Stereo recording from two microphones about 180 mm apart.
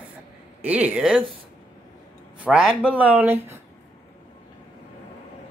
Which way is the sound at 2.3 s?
5° right (ahead or behind).